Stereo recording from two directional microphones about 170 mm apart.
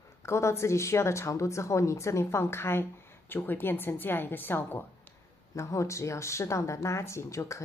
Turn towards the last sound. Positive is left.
turn(degrees=15)  # may be behind; listen again after turning